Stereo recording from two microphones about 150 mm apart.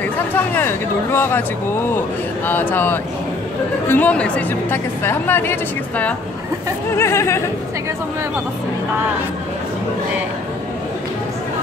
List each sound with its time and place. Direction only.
0.6 s a woman's voice: 15° left (ahead or behind)